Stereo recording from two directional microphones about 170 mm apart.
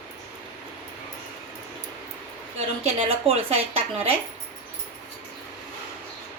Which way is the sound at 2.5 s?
40° right (ahead or behind).